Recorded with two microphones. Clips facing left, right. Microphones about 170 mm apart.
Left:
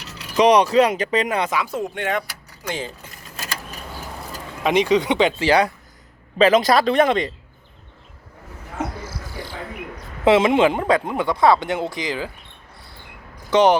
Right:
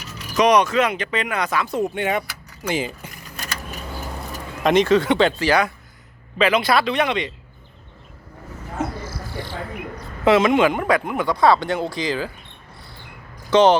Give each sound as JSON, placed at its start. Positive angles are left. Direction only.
{"t": 0.3, "sound": "speech", "side_deg": 30}
{"t": 1.5, "sound": "speech", "side_deg": 10}
{"t": 2.0, "sound": "speech", "side_deg": -5}
{"t": 4.6, "sound": "speech", "side_deg": 10}
{"t": 6.4, "sound": "speech", "side_deg": 40}
{"t": 10.2, "sound": "speech", "side_deg": 25}
{"t": 13.5, "sound": "speech", "side_deg": 15}